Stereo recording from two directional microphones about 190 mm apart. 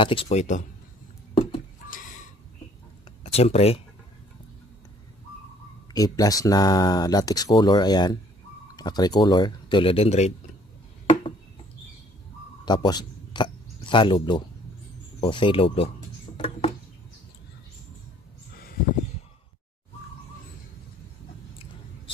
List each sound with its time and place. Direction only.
0.0 s speech: 30° left (ahead or behind)
1.3 s a sound: 30° left (ahead or behind)
3.3 s speech: 35° left (ahead or behind)
5.9 s speech: 20° left (ahead or behind); by 10.3 s 35° left (ahead or behind)
12.6 s speech: 20° left (ahead or behind)
16.3 s a sound: 30° left (ahead or behind)